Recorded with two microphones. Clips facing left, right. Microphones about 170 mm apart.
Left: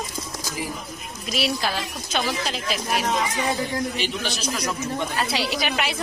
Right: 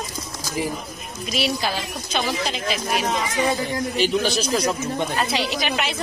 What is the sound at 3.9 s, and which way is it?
Speech, 35° right (ahead or behind).